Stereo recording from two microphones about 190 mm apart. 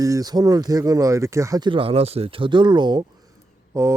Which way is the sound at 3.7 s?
15° right (ahead or behind).